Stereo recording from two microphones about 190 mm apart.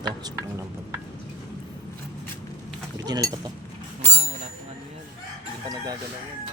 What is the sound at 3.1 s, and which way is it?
Stir, 20° right (ahead or behind).